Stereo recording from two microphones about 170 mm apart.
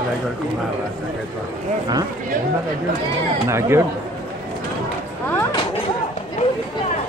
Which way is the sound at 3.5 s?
15° right (ahead or behind).